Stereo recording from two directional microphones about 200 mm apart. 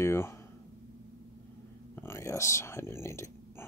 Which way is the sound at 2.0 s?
10° left (ahead or behind).